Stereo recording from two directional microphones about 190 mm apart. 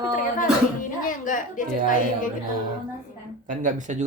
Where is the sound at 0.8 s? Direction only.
45° left (ahead or behind).